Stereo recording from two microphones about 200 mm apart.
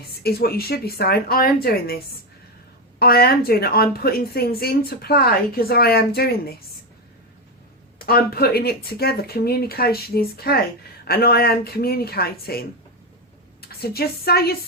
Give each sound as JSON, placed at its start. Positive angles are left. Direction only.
{"t": 0.2, "sound": "a woman's voice", "side_deg": 50}
{"t": 3.0, "sound": "a woman's voice", "side_deg": 50}
{"t": 7.9, "sound": "a woman's voice", "side_deg": 50}